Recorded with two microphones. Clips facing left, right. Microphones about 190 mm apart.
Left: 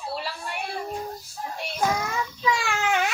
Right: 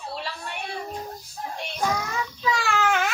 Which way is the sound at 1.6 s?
10° left (ahead or behind).